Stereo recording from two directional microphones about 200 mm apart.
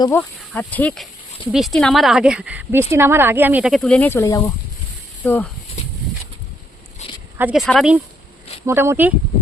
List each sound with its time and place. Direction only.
0.2 s speech: 10° left (ahead or behind)
7.0 s a sound: 35° left (ahead or behind)
7.3 s speech: 5° right (ahead or behind)
8.6 s speech: 10° right (ahead or behind)